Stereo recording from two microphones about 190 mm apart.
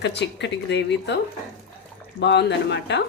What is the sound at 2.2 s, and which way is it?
Speech, 65° left (ahead or behind).